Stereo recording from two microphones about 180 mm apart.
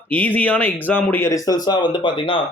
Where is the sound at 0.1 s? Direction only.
10° left (ahead or behind).